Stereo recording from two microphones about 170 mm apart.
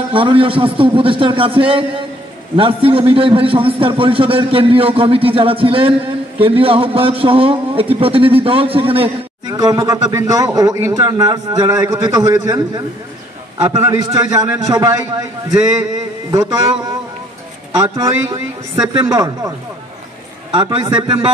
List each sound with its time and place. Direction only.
0.1 s a man's voice: 30° right (ahead or behind)
9.5 s a man's voice: 20° right (ahead or behind)
16.3 s speech: 20° right (ahead or behind)
17.8 s speech: 20° right (ahead or behind)
20.5 s a man's voice: 25° right (ahead or behind)